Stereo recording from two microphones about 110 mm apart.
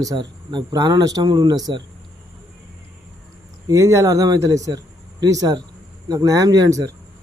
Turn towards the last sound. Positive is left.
turn(degrees=-35)  # may be behind; listen again after turning